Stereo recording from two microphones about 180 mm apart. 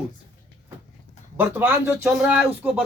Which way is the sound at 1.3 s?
10° right (ahead or behind).